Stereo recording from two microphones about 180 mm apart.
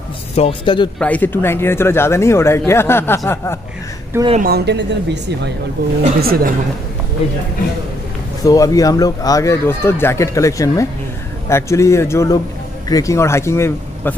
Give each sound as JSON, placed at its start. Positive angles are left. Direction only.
{"t": 0.4, "sound": "speech", "side_deg": 30}
{"t": 0.9, "sound": "speech", "side_deg": 10}
{"t": 4.4, "sound": "speech", "side_deg": -60}
{"t": 6.2, "sound": "a woman's voice", "side_deg": -55}
{"t": 8.5, "sound": "speech", "side_deg": 20}